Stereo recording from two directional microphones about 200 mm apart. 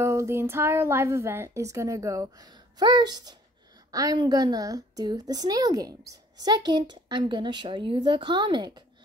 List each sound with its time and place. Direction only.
0.0 s a woman's voice: 15° right (ahead or behind)